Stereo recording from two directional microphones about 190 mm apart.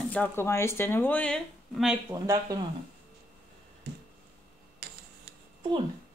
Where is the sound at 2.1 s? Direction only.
20° right (ahead or behind).